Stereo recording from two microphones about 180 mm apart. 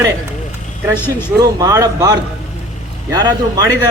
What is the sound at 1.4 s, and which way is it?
Speech, 20° right (ahead or behind).